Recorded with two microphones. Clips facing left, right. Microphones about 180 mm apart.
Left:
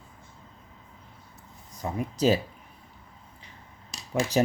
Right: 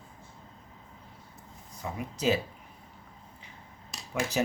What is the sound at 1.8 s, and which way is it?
Speech, 35° left (ahead or behind).